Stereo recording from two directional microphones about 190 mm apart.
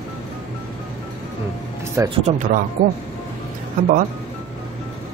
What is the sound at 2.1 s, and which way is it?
Speech, 35° right (ahead or behind).